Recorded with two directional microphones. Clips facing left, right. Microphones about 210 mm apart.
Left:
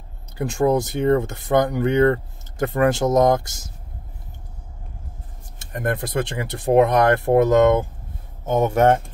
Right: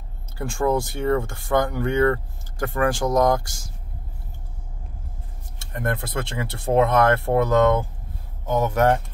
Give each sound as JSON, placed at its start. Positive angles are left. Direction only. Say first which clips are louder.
{"t": 0.4, "sound": "speech", "louder": "left 3 dB", "side_deg": 20}
{"t": 5.7, "sound": "speech", "louder": "left 2 dB", "side_deg": 20}